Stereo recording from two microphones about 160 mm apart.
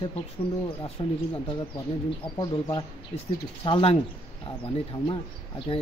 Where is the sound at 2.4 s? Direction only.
25° left (ahead or behind).